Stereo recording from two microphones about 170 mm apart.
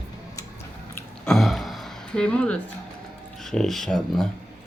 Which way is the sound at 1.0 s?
5° left (ahead or behind).